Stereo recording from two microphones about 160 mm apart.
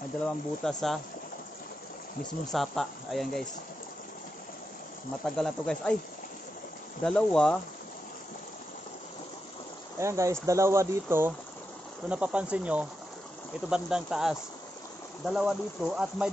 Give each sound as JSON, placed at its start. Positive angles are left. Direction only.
{"t": 0.7, "sound": "speech", "side_deg": 5}
{"t": 2.4, "sound": "speech", "side_deg": 0}
{"t": 5.2, "sound": "speech", "side_deg": 5}
{"t": 7.0, "sound": "speech", "side_deg": 5}
{"t": 9.9, "sound": "speech", "side_deg": -20}